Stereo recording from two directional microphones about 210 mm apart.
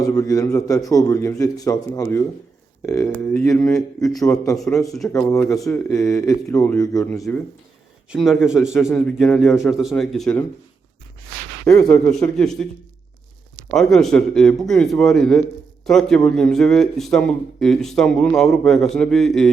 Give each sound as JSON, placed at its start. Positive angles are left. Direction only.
{"t": 0.0, "sound": "a man's voice", "side_deg": 15}
{"t": 4.1, "sound": "a man's voice", "side_deg": 15}
{"t": 4.5, "sound": "a man's voice", "side_deg": 0}
{"t": 8.1, "sound": "a man's voice", "side_deg": 0}
{"t": 11.6, "sound": "a man's voice", "side_deg": 15}
{"t": 13.7, "sound": "a man's voice", "side_deg": 0}